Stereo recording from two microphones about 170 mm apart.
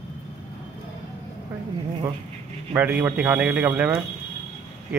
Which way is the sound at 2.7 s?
10° right (ahead or behind).